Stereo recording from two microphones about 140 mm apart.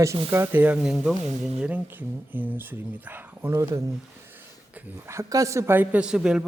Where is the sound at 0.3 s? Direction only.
20° right (ahead or behind).